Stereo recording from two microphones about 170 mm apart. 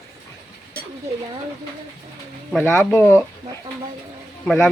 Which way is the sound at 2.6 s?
10° left (ahead or behind).